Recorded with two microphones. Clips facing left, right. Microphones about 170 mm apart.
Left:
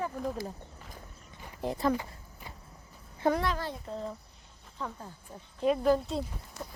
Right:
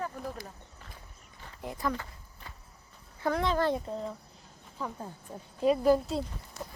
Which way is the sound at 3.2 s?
20° left (ahead or behind).